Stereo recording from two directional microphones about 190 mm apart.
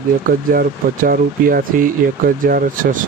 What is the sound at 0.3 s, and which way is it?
Speech, 50° right (ahead or behind).